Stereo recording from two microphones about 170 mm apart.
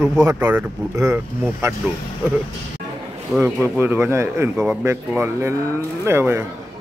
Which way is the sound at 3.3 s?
10° right (ahead or behind).